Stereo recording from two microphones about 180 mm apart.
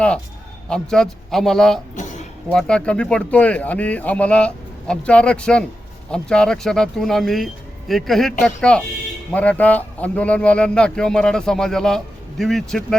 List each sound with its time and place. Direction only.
0.7 s a man's voice: 5° left (ahead or behind)
2.0 s music: 40° left (ahead or behind)
2.5 s a man's voice: 5° left (ahead or behind)